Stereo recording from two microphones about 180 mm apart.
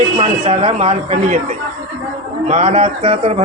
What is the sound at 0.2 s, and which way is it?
Speech, 35° right (ahead or behind).